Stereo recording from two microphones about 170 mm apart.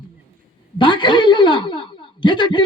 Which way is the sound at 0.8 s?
25° left (ahead or behind).